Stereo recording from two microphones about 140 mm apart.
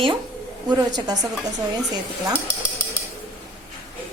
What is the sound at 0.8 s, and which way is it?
Speech, 30° right (ahead or behind).